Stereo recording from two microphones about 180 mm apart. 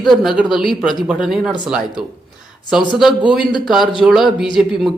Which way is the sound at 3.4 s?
25° left (ahead or behind).